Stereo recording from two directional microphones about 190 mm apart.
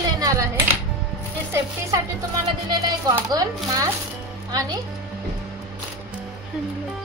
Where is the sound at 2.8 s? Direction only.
20° right (ahead or behind).